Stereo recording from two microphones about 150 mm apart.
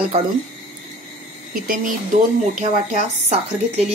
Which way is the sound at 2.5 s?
50° right (ahead or behind).